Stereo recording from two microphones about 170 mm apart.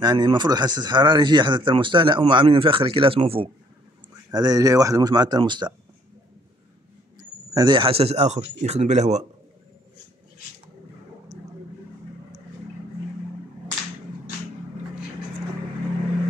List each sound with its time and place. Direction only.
0.0 s speech: 25° right (ahead or behind)
7.2 s speech: 25° right (ahead or behind); by 9.2 s 40° right (ahead or behind)